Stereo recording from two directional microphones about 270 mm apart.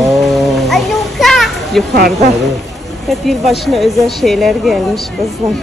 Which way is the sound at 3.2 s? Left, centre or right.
Centre.